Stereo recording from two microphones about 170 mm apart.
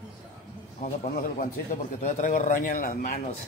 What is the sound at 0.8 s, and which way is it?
A man's voice, 45° left (ahead or behind).